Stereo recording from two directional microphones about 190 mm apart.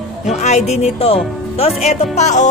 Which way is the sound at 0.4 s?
35° left (ahead or behind).